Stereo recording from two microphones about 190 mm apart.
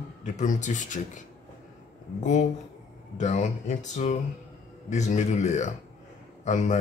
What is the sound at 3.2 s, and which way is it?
Speech, 40° left (ahead or behind).